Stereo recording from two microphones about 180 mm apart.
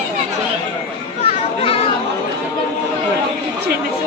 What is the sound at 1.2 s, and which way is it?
Children playing, 35° left (ahead or behind).